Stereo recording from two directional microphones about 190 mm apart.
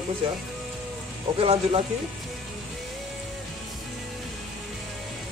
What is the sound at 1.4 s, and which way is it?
Speech, 30° right (ahead or behind).